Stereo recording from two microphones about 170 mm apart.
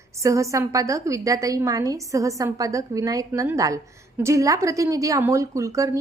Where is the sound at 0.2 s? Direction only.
20° right (ahead or behind).